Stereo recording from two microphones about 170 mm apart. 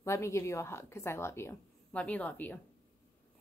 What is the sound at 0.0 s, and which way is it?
A woman's voice, 15° left (ahead or behind).